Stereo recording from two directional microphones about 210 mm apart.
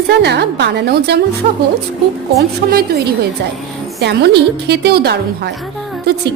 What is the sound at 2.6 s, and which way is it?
A woman's voice, 45° right (ahead or behind).